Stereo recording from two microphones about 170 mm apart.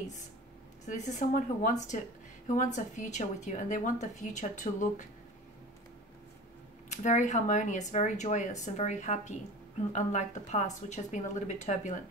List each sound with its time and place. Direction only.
0.8 s speech: 45° left (ahead or behind)
6.9 s speech: 45° left (ahead or behind)